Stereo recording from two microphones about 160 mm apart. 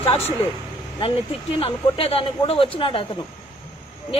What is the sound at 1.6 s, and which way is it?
A man's voice, 35° left (ahead or behind).